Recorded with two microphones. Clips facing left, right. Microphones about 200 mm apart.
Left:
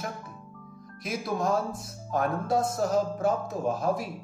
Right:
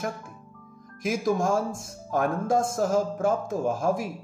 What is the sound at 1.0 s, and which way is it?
Speech, 45° right (ahead or behind).